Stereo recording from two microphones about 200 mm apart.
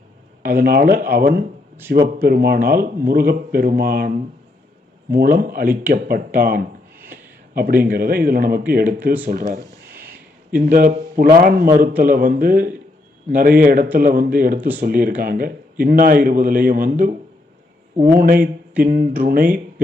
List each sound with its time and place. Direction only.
0.4 s a man's voice: 50° right (ahead or behind)
5.1 s a man's voice: 45° right (ahead or behind)
9.5 s a sound: 45° right (ahead or behind)
11.8 s a man's voice: 45° right (ahead or behind)
18.2 s a man's voice: 45° right (ahead or behind)